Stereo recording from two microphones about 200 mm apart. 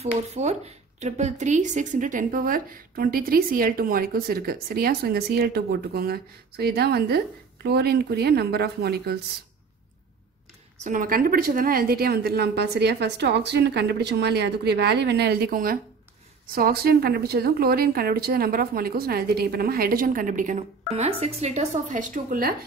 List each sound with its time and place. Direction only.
0.0 s speech: 30° right (ahead or behind); by 9.2 s 55° right (ahead or behind)
10.8 s a woman's voice: 40° right (ahead or behind)